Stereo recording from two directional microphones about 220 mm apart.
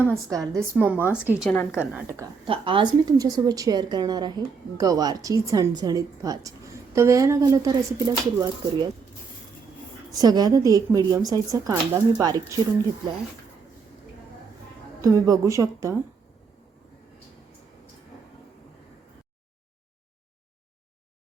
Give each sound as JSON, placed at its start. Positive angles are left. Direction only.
{"t": 0.1, "sound": "a woman's voice", "side_deg": -15}
{"t": 2.5, "sound": "a woman's voice", "side_deg": -25}
{"t": 10.1, "sound": "a woman's voice", "side_deg": -15}
{"t": 15.0, "sound": "a woman's voice", "side_deg": -15}